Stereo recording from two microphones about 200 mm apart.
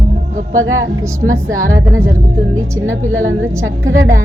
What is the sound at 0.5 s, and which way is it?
Speech, 80° right.